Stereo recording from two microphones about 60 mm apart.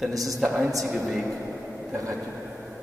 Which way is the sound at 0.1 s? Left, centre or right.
Right.